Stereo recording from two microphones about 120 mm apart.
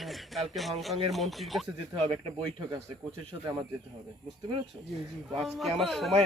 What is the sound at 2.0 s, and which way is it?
Speech, 50° right (ahead or behind).